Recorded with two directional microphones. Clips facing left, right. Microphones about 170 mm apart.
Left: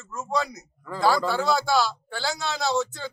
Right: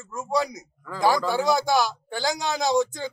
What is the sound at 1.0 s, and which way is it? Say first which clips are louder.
Speech: right 1 dB; 15° right (ahead or behind).